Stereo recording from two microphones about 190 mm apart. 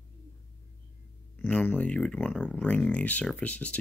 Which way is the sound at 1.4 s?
10° left (ahead or behind).